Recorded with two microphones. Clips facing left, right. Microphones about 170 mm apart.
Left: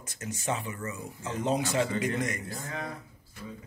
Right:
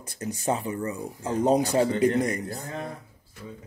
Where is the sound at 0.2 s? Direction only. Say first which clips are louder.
Right 5 dB; 35° right (ahead or behind).